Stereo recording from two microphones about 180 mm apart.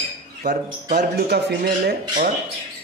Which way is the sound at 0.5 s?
60° right (ahead or behind).